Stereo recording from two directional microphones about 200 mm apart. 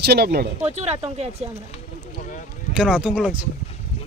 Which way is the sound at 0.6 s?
30° right (ahead or behind).